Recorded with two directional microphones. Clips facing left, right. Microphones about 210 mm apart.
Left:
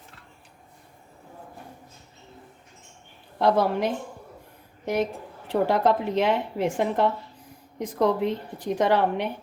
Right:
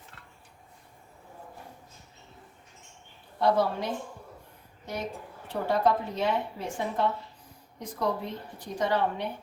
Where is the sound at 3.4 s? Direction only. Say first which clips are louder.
Left 4 dB; 90° left.